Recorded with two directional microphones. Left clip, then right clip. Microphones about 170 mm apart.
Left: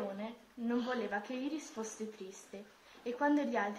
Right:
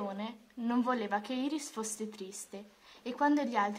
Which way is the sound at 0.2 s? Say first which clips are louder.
Right 3 dB; 35° right (ahead or behind).